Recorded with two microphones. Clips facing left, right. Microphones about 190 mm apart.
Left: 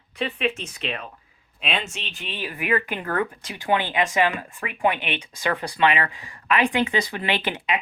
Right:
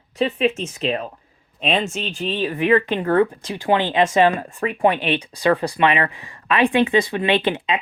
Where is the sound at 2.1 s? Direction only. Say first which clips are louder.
Right 10 dB; 30° right (ahead or behind).